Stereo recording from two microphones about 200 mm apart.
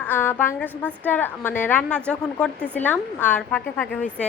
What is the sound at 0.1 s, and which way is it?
A woman's voice, 10° left (ahead or behind).